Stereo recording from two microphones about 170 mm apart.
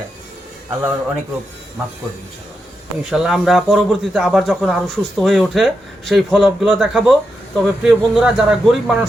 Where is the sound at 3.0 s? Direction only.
5° right (ahead or behind).